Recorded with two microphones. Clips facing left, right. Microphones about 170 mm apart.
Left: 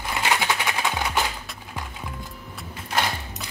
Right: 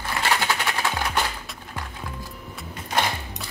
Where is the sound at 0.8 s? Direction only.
5° left (ahead or behind).